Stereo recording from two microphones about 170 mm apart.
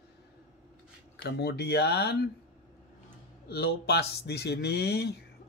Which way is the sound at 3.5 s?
70° left (ahead or behind).